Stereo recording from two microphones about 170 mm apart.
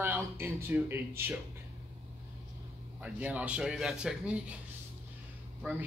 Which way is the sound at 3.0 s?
5° right (ahead or behind).